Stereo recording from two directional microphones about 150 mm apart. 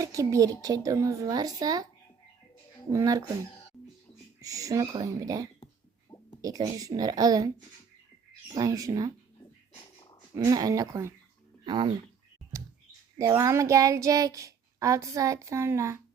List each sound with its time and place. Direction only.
0.0 s child singing: 20° right (ahead or behind)
2.9 s child singing: 20° right (ahead or behind)
4.4 s child singing: 20° right (ahead or behind)
8.5 s child singing: 25° right (ahead or behind)
9.7 s purr: 30° left (ahead or behind)
10.3 s child singing: 25° right (ahead or behind)
11.6 s speech: 30° right (ahead or behind)
13.1 s child singing: 20° right (ahead or behind)